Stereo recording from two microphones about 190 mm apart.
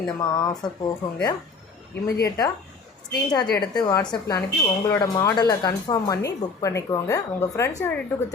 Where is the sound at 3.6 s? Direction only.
20° left (ahead or behind).